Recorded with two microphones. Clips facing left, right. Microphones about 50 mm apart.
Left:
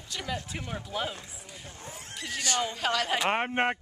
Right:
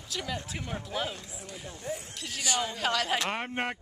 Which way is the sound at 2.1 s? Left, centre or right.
Centre.